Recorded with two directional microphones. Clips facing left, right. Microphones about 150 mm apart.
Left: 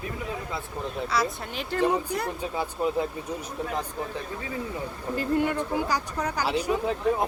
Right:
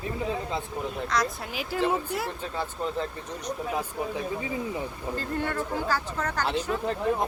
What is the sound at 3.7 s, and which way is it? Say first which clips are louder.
Speech: right 2 dB; 10° right (ahead or behind).